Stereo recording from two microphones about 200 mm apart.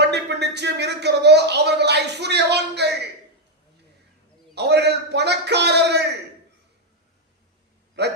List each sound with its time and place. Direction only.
0.0 s speech: 55° right (ahead or behind)
4.5 s a man's voice: 55° right (ahead or behind)
8.0 s speech: 60° right (ahead or behind)